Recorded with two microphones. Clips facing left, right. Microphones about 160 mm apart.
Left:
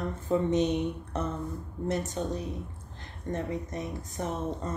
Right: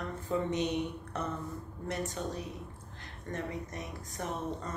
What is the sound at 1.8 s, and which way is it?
Speech, 25° left (ahead or behind).